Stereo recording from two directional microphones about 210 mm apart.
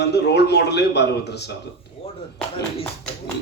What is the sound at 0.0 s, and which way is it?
A man's voice, 55° left (ahead or behind).